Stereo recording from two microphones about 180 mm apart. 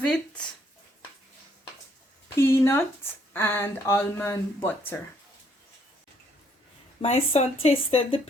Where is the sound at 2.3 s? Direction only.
15° left (ahead or behind).